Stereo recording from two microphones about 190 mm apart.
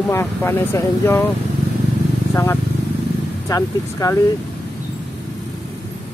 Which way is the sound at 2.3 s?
10° left (ahead or behind).